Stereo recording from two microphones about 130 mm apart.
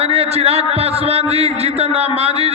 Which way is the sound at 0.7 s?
50° right (ahead or behind).